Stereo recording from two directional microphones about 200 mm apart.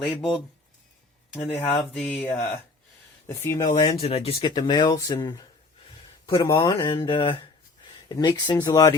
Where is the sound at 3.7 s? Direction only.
25° left (ahead or behind).